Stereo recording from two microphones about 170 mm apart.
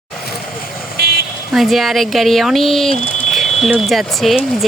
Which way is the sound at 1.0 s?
75° right (ahead or behind).